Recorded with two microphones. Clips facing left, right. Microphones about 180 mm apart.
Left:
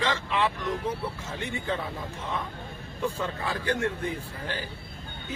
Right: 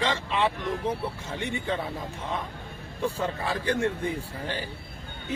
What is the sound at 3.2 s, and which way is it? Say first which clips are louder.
Speech: right 2 dB; 30° right (ahead or behind).